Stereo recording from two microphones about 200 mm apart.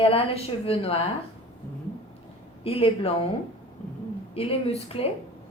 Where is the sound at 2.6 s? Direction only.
30° left (ahead or behind).